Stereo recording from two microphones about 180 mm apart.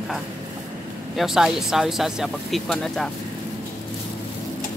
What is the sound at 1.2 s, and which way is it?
Speech, centre (ahead or behind).